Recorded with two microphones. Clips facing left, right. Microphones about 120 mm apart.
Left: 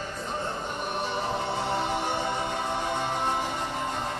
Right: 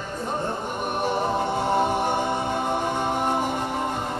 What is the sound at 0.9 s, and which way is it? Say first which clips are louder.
A capella: right 7 dB; 55° right (ahead or behind).